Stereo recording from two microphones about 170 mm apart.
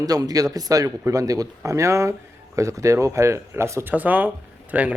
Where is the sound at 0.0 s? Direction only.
20° right (ahead or behind).